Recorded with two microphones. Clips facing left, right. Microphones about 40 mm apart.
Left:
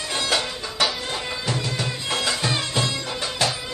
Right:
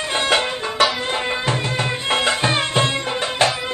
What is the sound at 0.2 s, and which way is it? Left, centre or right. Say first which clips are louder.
Music: right 6 dB; right.